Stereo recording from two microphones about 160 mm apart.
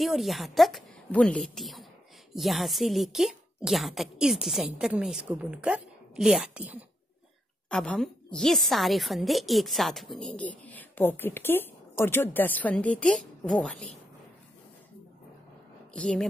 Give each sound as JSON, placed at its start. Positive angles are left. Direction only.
{"t": 0.0, "sound": "a woman's voice", "side_deg": 0}
{"t": 7.7, "sound": "a woman's voice", "side_deg": 5}
{"t": 15.9, "sound": "speech", "side_deg": 5}